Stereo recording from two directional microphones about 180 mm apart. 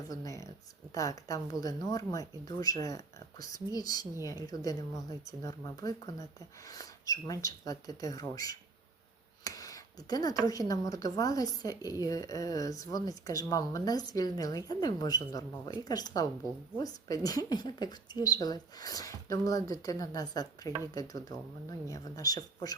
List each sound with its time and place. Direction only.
0.1 s speech: 20° left (ahead or behind)
9.4 s a sound: 20° left (ahead or behind)
10.4 s speech: 20° left (ahead or behind)